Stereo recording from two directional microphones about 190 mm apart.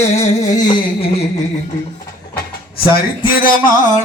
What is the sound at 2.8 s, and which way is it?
Speech, 50° left (ahead or behind).